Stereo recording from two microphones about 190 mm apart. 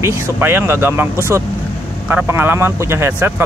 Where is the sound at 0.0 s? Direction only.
10° right (ahead or behind).